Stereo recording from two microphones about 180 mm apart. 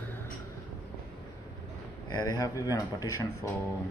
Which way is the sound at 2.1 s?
20° left (ahead or behind).